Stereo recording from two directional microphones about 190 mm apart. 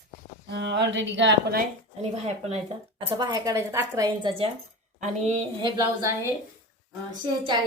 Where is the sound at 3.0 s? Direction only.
20° right (ahead or behind); by 5.7 s 35° right (ahead or behind).